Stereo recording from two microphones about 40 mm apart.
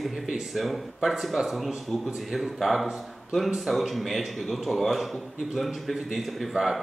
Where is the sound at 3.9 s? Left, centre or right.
Centre.